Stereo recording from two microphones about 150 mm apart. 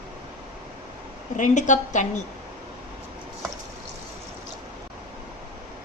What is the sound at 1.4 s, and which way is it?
Speech, 55° left (ahead or behind).